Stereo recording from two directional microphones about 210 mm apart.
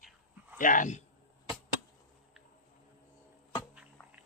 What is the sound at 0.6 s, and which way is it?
Speech, 40° left (ahead or behind).